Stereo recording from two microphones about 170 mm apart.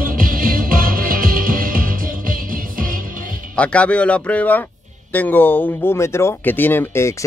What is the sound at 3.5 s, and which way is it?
Speech, 5° left (ahead or behind).